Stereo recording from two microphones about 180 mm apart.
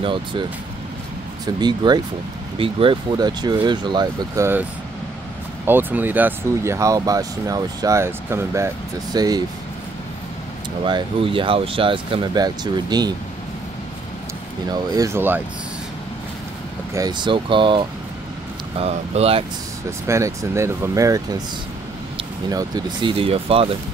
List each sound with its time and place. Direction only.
0.0 s speech: 25° right (ahead or behind)
1.4 s speech: 25° right (ahead or behind)
5.7 s speech: 10° right (ahead or behind)
10.8 s speech: 25° right (ahead or behind)
14.7 s speech: 20° right (ahead or behind)
16.9 s speech: 20° right (ahead or behind)
20.1 s speech: 15° right (ahead or behind); by 23.8 s 30° right (ahead or behind)